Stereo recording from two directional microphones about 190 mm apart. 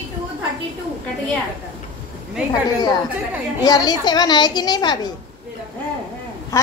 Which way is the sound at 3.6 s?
20° left (ahead or behind).